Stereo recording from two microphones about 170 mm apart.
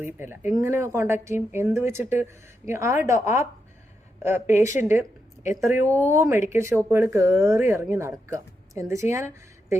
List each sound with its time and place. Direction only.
0.0 s speech: 15° right (ahead or behind)